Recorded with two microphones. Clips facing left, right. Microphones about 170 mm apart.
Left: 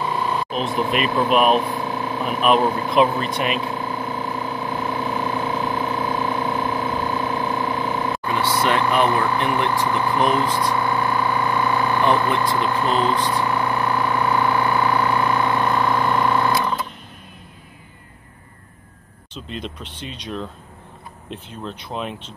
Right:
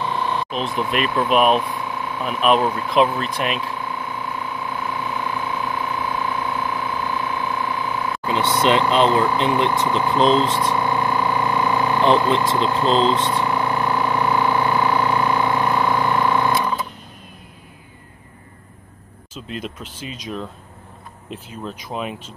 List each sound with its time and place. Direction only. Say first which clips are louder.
0.0 s vehicle: even; 5° left (ahead or behind)
0.9 s speech: right 1 dB; centre (ahead or behind)
1.6 s vehicle: left 2 dB; 35° left (ahead or behind)
2.4 s speech: even; centre (ahead or behind)
3.5 s a sound: left 2 dB; 35° left (ahead or behind)
6.9 s pump: left 2 dB; 35° left (ahead or behind)
8.3 s speech: right 3 dB; 20° right (ahead or behind)
13.5 s a sound: even; 10° right (ahead or behind)
19.3 s speech: right 1 dB; 5° right (ahead or behind)